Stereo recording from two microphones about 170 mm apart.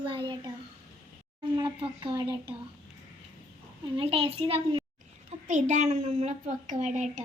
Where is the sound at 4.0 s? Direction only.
35° right (ahead or behind).